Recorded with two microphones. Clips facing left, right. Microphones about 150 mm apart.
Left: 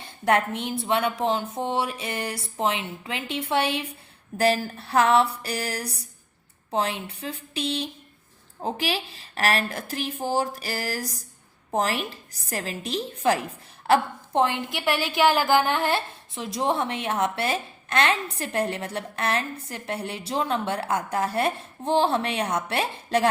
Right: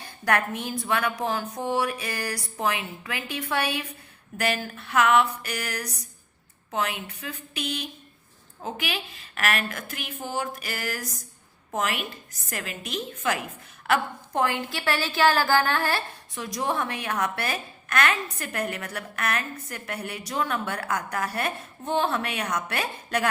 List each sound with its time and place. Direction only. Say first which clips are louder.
0.0 s a woman's voice: left 3 dB; 25° left (ahead or behind)